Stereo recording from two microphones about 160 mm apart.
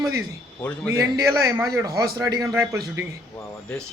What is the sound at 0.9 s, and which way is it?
A man's voice, 25° right (ahead or behind).